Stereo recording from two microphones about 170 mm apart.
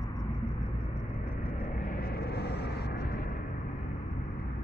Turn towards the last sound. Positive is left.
turn(degrees=65)  # may be behind; listen again after turning